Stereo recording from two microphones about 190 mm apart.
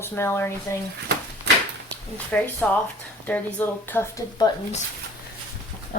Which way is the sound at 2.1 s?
10° left (ahead or behind).